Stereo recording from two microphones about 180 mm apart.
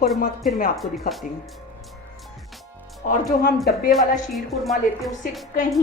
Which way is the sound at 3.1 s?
45° left (ahead or behind).